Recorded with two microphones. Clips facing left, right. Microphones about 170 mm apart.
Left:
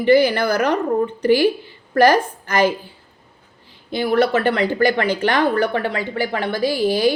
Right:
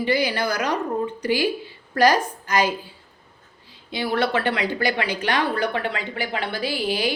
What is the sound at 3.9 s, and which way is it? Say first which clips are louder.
Speech: left 6 dB; 45° left (ahead or behind).